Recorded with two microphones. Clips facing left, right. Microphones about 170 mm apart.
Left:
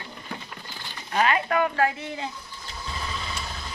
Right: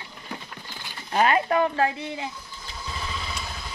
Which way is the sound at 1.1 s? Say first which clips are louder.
Right 2 dB; 40° right (ahead or behind).